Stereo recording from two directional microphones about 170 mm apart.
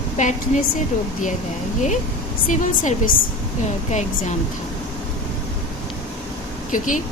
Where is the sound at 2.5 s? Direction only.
50° left (ahead or behind).